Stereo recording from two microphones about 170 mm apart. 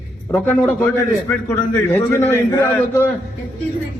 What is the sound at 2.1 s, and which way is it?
A man's voice, 15° left (ahead or behind).